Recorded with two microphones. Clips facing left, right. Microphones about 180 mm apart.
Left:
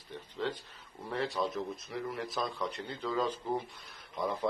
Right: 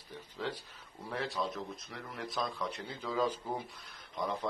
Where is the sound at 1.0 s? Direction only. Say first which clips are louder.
Left 3 dB; centre (ahead or behind).